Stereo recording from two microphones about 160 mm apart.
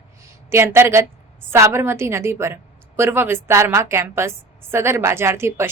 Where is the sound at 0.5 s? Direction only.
15° right (ahead or behind).